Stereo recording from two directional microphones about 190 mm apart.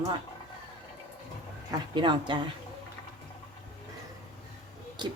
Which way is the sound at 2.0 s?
25° right (ahead or behind).